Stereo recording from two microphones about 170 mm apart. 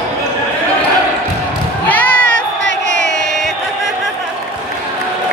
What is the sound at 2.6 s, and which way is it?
Crowd, 90° left.